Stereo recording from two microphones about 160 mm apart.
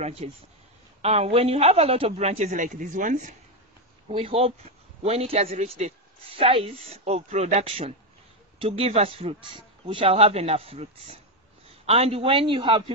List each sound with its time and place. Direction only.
0.0 s a man's voice: 40° right (ahead or behind)
4.1 s a man's voice: 35° right (ahead or behind)